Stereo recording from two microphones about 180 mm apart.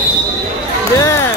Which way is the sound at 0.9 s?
20° left (ahead or behind).